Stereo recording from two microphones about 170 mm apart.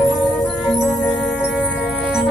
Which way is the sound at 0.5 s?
5° left (ahead or behind).